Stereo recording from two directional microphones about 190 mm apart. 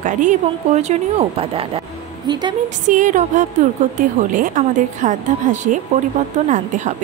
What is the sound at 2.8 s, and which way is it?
A woman's voice, 40° right (ahead or behind).